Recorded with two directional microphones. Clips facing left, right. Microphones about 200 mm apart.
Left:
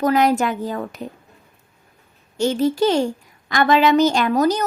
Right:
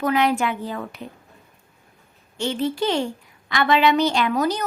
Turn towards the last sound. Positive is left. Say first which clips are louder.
# left 4 dB
turn(degrees=40)  # may be behind; listen again after turning